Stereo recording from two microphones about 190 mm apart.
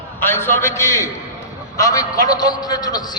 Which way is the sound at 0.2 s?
10° left (ahead or behind).